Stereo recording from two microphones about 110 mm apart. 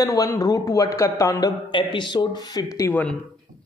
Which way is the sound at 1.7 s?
45° left (ahead or behind).